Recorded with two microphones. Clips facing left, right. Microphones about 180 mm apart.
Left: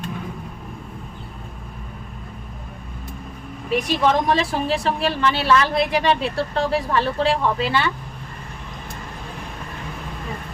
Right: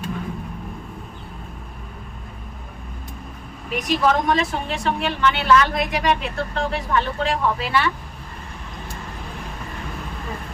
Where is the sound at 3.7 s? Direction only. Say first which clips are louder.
Left 1 dB; 30° left (ahead or behind).